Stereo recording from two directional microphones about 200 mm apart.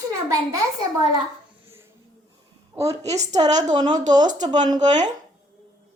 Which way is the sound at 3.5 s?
35° right (ahead or behind).